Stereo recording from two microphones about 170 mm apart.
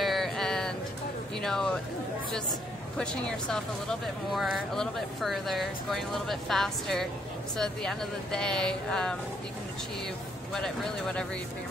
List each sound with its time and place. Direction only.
0.0 s a sound: centre (ahead or behind)
3.0 s speech: 5° left (ahead or behind)
10.5 s speech: 5° left (ahead or behind)